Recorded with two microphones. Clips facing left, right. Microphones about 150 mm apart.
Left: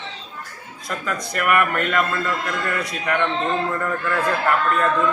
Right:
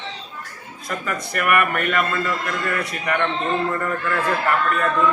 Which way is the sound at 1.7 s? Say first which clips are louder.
Even; centre (ahead or behind).